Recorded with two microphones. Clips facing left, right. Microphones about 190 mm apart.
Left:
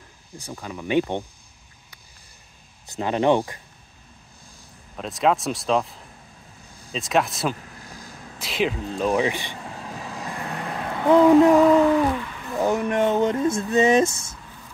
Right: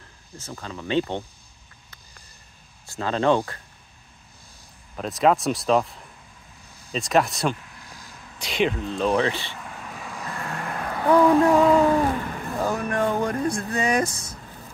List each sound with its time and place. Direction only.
0.4 s speech: 10° left (ahead or behind)
2.9 s speech: 20° left (ahead or behind)
4.9 s speech: centre (ahead or behind); by 9.6 s 15° left (ahead or behind)
9.6 s vehicle: 30° left (ahead or behind)
10.3 s vehicle: 20° left (ahead or behind)
11.3 s speech: 20° left (ahead or behind)
12.2 s a sound: 50° right (ahead or behind)
12.6 s speech: 20° left (ahead or behind)